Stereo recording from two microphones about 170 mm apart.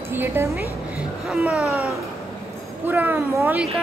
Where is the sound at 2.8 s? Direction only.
10° right (ahead or behind).